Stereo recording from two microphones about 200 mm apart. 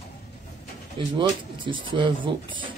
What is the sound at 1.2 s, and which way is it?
Speech, 25° right (ahead or behind).